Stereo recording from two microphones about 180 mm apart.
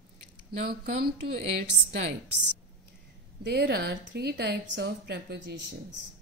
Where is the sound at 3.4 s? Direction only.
65° right (ahead or behind).